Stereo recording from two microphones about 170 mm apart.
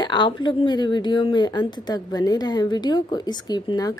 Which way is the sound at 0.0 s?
25° left (ahead or behind).